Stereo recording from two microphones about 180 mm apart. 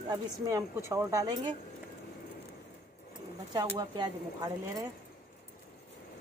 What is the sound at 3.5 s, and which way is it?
Speech, 25° right (ahead or behind).